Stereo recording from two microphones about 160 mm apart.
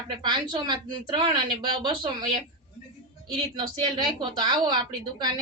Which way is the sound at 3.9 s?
30° right (ahead or behind).